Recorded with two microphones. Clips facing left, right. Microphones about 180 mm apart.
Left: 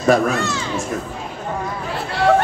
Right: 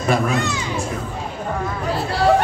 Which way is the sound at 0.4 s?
15° right (ahead or behind).